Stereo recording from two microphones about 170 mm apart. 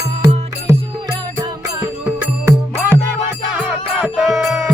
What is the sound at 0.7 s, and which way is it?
Music, 20° right (ahead or behind).